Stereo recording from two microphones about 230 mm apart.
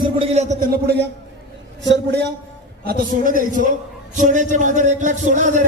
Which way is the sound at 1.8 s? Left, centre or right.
Right.